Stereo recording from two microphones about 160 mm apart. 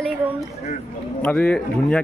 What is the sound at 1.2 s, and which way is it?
Speech, 5° left (ahead or behind).